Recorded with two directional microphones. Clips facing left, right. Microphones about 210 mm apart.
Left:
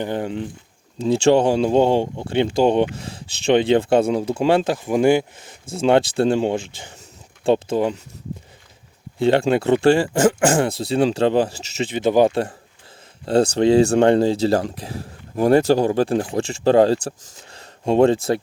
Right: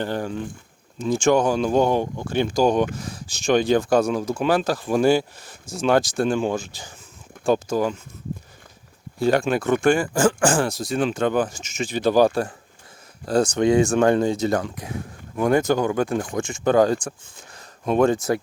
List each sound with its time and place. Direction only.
0.0 s speech: 20° left (ahead or behind)
9.1 s speech: 25° left (ahead or behind)
13.6 s speech: 30° left (ahead or behind)
17.5 s a sound: 30° left (ahead or behind)